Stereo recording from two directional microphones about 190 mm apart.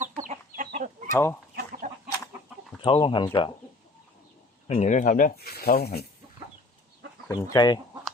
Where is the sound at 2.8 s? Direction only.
30° left (ahead or behind).